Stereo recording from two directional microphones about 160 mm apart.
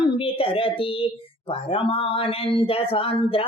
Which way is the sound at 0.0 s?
35° left (ahead or behind).